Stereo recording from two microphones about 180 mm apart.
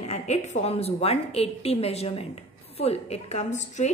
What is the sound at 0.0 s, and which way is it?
A woman's voice, 35° left (ahead or behind).